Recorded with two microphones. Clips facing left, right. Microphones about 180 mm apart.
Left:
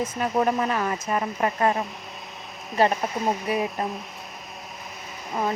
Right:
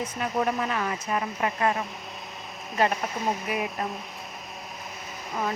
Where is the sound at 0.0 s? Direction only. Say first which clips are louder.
Left 4 dB; 40° left (ahead or behind).